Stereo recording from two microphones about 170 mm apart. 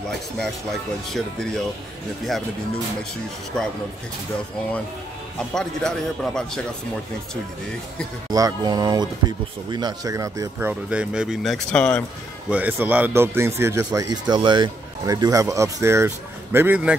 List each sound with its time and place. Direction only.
0.4 s speech: centre (ahead or behind)
5.5 s speech: 5° left (ahead or behind)
8.3 s speech: 20° right (ahead or behind)
10.7 s speech: 5° right (ahead or behind)
12.4 s speech: 10° right (ahead or behind)